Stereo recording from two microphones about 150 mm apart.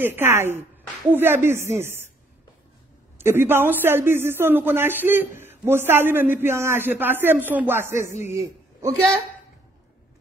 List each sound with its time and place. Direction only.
0.0 s speech: 15° right (ahead or behind)
3.2 s a man's voice: 15° right (ahead or behind)